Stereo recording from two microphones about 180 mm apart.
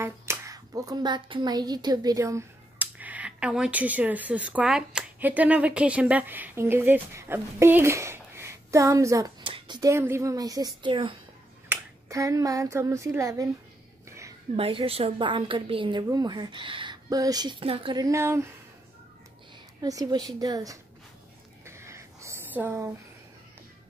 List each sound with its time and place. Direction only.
0.0 s a woman's voice: 15° right (ahead or behind)
11.7 s speech: 15° right (ahead or behind)
14.0 s a sound: 15° right (ahead or behind)
14.6 s a woman's voice: 30° right (ahead or behind); by 18.5 s 15° right (ahead or behind)
19.8 s a woman's voice: 20° right (ahead or behind)
21.6 s a sound: 15° right (ahead or behind)